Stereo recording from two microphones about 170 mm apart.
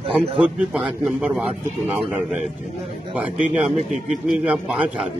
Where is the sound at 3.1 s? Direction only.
10° right (ahead or behind).